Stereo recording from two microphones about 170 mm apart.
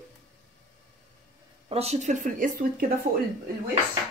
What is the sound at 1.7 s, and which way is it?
Speech, 35° right (ahead or behind).